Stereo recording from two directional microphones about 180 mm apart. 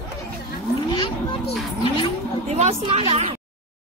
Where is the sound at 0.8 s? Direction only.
25° left (ahead or behind).